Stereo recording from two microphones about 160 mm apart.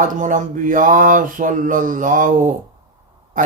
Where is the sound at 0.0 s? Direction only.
55° right (ahead or behind).